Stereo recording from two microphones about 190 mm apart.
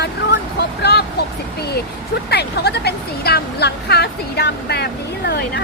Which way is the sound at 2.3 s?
60° left (ahead or behind).